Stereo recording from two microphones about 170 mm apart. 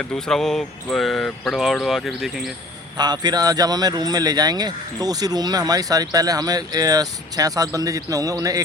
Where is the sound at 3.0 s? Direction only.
25° right (ahead or behind).